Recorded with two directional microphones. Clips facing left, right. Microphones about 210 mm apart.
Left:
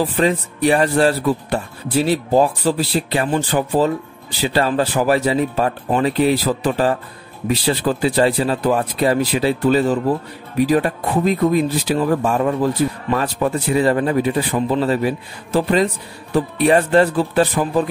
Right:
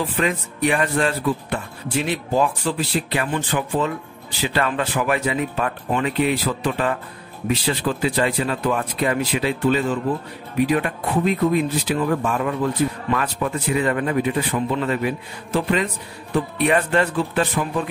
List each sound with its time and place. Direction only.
0.0 s speech: 35° left (ahead or behind)